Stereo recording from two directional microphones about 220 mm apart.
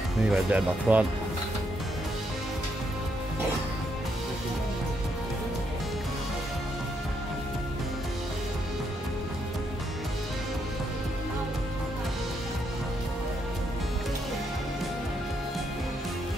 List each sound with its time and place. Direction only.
0.3 s speech: 5° right (ahead or behind)